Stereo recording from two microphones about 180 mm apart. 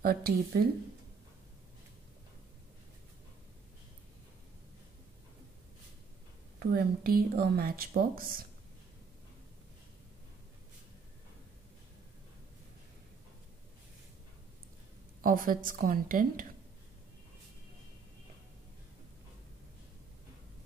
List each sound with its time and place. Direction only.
0.0 s a woman's voice: 55° right (ahead or behind)
6.6 s a woman's voice: 55° right (ahead or behind)
15.2 s a woman's voice: 50° right (ahead or behind)